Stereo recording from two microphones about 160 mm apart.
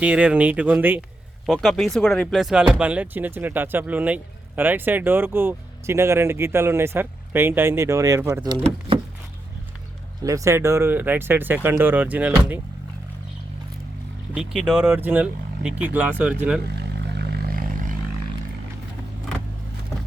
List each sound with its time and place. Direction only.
0.0 s speech: 10° right (ahead or behind)
1.6 s speech: centre (ahead or behind); by 8.4 s 15° right (ahead or behind)
10.2 s speech: 20° right (ahead or behind)
14.3 s speech: 5° right (ahead or behind)
16.6 s vehicle: 90° right; by 18.0 s 60° right (ahead or behind)